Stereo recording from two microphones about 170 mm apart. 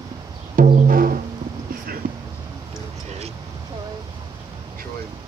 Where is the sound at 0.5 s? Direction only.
50° right (ahead or behind).